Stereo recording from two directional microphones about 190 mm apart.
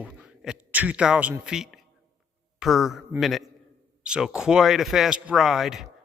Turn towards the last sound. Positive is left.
turn(degrees=0)  # may be behind; listen again after turning